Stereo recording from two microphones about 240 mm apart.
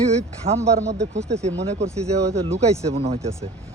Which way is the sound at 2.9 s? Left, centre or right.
Right.